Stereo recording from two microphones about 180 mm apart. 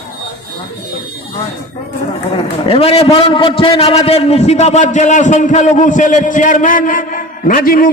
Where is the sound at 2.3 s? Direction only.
30° left (ahead or behind).